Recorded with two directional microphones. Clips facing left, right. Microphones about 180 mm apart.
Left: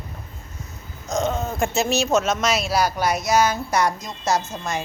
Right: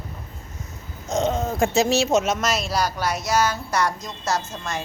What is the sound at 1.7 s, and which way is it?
Speech, 35° right (ahead or behind).